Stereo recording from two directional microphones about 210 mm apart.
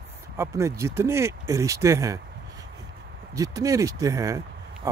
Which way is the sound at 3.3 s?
15° right (ahead or behind).